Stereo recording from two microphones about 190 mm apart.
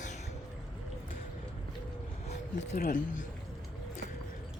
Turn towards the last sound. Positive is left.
turn(degrees=55)  # may be behind; listen again after turning